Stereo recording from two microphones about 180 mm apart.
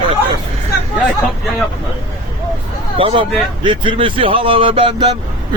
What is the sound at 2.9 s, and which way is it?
Speech, 30° right (ahead or behind).